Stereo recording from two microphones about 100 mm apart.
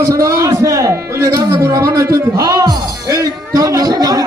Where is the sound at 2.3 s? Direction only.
45° right (ahead or behind).